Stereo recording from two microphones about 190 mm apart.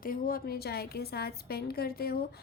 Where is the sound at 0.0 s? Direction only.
50° left (ahead or behind).